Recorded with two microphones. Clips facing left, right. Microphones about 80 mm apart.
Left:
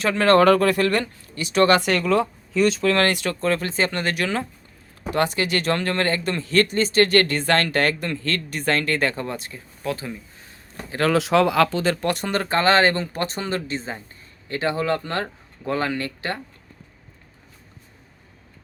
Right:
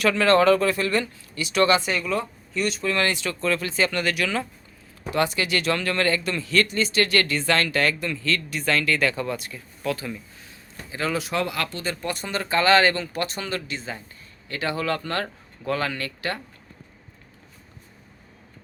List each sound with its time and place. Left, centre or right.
0.0 s speech: left
1.8 s speech: left
2.8 s speech: left
10.8 s speech: left